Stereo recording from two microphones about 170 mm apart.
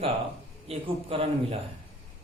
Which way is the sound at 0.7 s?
35° right (ahead or behind).